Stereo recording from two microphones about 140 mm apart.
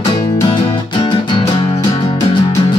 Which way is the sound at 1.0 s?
35° left (ahead or behind).